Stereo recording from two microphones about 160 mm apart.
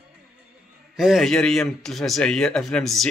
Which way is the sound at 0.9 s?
Centre (ahead or behind).